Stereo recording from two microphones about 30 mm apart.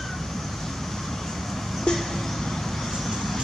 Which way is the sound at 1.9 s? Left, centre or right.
Left.